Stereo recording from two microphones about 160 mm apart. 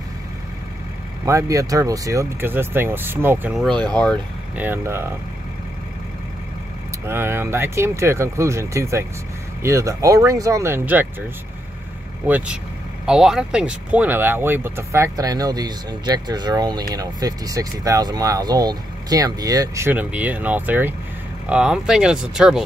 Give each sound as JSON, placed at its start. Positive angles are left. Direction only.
{"t": 1.2, "sound": "speech", "side_deg": -20}
{"t": 3.5, "sound": "speech", "side_deg": 0}
{"t": 4.6, "sound": "speech", "side_deg": -15}
{"t": 7.1, "sound": "speech", "side_deg": -15}
{"t": 12.3, "sound": "speech", "side_deg": -10}